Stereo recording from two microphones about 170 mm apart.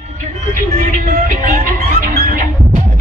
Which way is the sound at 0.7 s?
50° right (ahead or behind).